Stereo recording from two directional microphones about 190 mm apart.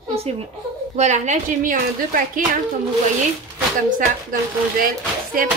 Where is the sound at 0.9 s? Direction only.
40° right (ahead or behind).